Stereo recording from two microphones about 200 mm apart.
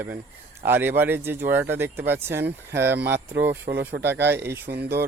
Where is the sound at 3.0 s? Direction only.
55° right (ahead or behind).